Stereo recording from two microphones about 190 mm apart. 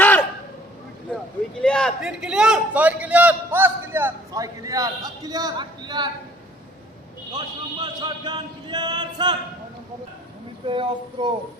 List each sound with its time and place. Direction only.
0.0 s a sound: 10° left (ahead or behind)
1.6 s a man's voice: 5° left (ahead or behind); by 6.1 s 25° right (ahead or behind)
7.3 s speech: 25° right (ahead or behind)
10.7 s speech: 25° right (ahead or behind)